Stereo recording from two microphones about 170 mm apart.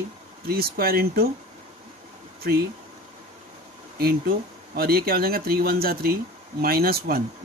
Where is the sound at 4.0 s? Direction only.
60° right (ahead or behind).